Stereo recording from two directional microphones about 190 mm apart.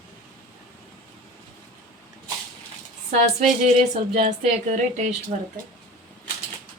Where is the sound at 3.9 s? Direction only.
35° right (ahead or behind).